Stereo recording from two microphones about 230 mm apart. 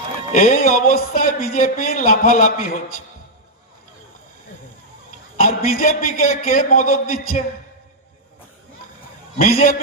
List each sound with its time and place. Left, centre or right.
0.3 s speech: left
5.4 s speech: left
9.4 s speech: left